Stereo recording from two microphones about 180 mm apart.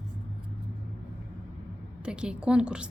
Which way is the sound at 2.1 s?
5° right (ahead or behind).